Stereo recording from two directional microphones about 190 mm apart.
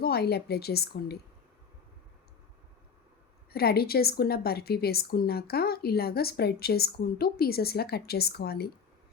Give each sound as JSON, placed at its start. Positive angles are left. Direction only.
{"t": 0.0, "sound": "a woman's voice", "side_deg": 55}
{"t": 3.5, "sound": "a woman's voice", "side_deg": 55}